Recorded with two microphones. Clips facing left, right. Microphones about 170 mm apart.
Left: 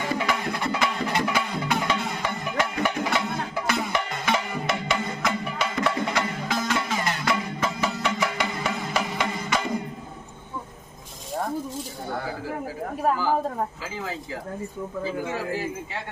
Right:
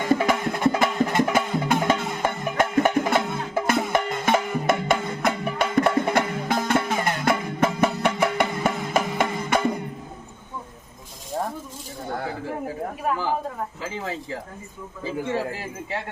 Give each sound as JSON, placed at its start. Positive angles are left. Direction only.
{"t": 0.1, "sound": "music", "side_deg": -45}